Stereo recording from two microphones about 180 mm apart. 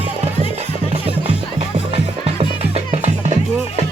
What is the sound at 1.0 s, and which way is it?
Music, 35° right (ahead or behind).